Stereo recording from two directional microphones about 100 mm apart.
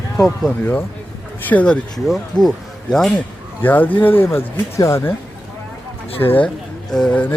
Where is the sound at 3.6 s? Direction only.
20° left (ahead or behind).